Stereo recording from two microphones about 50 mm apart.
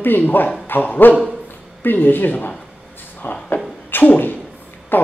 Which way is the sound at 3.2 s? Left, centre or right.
Left.